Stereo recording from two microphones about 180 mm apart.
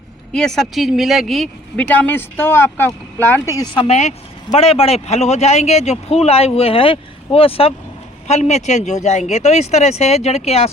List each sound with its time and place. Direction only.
0.3 s speech: 5° left (ahead or behind)
3.8 s speech: 35° left (ahead or behind)